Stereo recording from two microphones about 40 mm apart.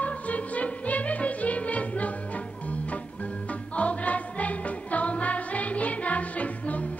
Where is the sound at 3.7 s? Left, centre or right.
Left.